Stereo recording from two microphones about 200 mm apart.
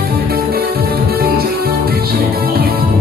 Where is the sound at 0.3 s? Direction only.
50° right (ahead or behind).